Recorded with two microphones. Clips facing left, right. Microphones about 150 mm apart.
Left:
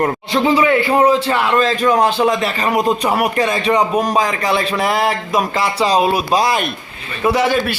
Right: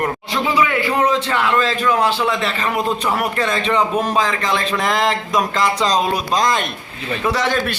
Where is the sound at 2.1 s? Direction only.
45° left (ahead or behind).